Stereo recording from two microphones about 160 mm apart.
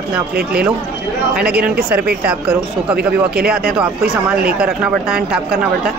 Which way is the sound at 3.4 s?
75° right (ahead or behind).